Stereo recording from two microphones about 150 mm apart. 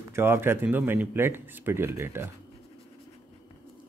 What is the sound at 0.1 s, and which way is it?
Speech, 15° right (ahead or behind).